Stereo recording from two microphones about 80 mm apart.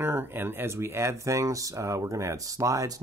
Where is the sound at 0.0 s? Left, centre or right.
Right.